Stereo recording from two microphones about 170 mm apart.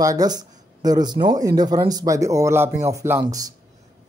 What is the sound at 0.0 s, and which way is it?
Speech, 20° right (ahead or behind).